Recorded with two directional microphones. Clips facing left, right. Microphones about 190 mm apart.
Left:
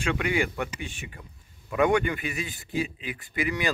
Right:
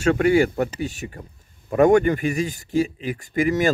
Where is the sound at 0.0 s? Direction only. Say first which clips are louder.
Right 10 dB; 40° right (ahead or behind).